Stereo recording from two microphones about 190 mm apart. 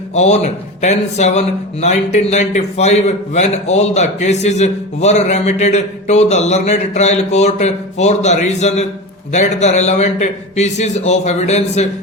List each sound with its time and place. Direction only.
0.1 s speech: 35° left (ahead or behind)